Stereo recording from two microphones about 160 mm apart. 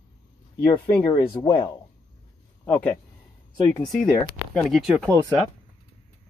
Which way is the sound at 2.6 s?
10° left (ahead or behind).